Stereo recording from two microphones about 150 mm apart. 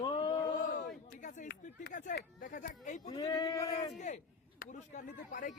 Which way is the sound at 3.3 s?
25° left (ahead or behind).